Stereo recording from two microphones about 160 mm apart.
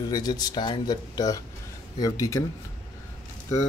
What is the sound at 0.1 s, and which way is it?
Speech, 25° left (ahead or behind).